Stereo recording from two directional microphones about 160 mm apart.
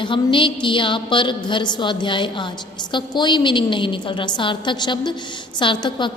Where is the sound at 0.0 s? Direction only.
30° left (ahead or behind).